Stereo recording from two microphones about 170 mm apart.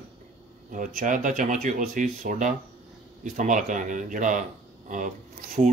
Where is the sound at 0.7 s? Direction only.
50° right (ahead or behind).